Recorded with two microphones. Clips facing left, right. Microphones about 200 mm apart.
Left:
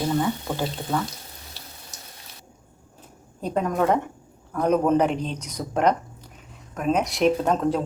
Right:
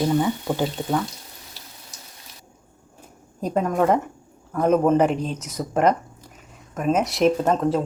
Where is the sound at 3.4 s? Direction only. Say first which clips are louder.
Right 2 dB; 5° right (ahead or behind).